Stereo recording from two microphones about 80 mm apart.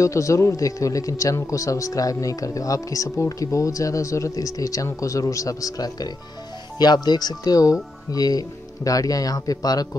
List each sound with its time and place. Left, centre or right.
0.0 s speech: left